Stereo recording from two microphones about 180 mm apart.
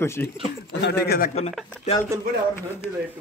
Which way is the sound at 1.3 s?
35° left (ahead or behind).